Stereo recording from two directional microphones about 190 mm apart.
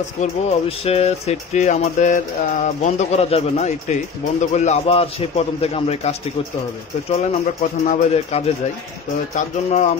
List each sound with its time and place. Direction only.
0.2 s speech: 35° left (ahead or behind)
7.8 s speech: 35° left (ahead or behind)